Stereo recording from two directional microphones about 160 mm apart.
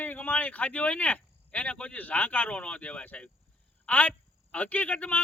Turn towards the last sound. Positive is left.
turn(degrees=10)  # may be behind; listen again after turning